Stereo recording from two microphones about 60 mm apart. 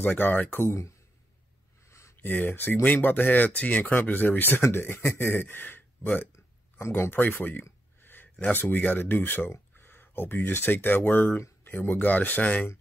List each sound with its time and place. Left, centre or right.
0.0 s speech: left
1.9 s a sound: left
2.1 s speech: left